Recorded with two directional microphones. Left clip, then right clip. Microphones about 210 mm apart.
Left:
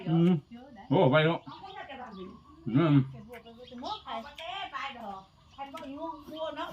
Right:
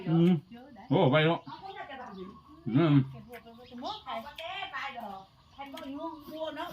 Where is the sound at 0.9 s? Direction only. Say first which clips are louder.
Left 1 dB; 5° left (ahead or behind).